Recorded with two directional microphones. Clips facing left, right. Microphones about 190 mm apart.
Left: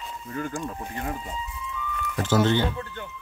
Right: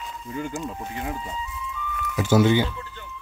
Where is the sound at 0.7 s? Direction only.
15° right (ahead or behind).